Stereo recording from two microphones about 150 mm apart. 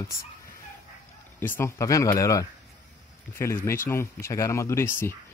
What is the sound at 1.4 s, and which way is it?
Speech, 15° left (ahead or behind).